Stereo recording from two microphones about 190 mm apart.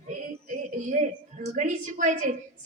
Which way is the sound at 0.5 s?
40° right (ahead or behind).